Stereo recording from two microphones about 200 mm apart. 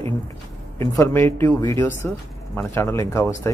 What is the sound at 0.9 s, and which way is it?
Speech, 15° left (ahead or behind).